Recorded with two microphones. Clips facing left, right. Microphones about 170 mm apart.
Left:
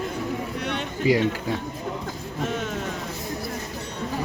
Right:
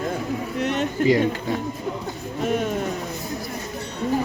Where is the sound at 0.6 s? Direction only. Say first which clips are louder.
Right 9 dB; 5° right (ahead or behind).